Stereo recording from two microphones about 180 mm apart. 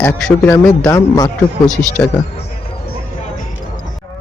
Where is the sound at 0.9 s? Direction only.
20° left (ahead or behind).